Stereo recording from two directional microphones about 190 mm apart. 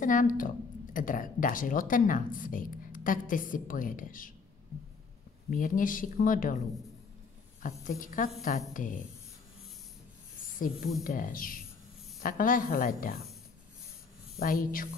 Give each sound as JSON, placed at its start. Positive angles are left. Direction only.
{"t": 0.0, "sound": "a woman's voice", "side_deg": 45}
{"t": 5.5, "sound": "a woman's voice", "side_deg": 45}
{"t": 8.0, "sound": "a woman's voice", "side_deg": 45}
{"t": 10.5, "sound": "a woman's voice", "side_deg": 45}
{"t": 14.4, "sound": "a woman's voice", "side_deg": 50}